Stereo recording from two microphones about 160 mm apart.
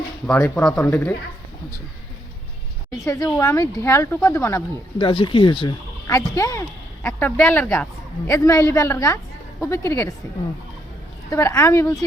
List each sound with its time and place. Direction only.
0.3 s speech: 5° left (ahead or behind)
3.2 s speech: 15° left (ahead or behind)
4.9 s speech: 30° left (ahead or behind); by 7.9 s 10° left (ahead or behind)
8.3 s a woman's voice: 20° left (ahead or behind)
11.3 s speech: 20° left (ahead or behind)